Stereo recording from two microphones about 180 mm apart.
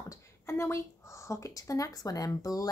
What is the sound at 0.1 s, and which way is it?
Speech, 15° left (ahead or behind).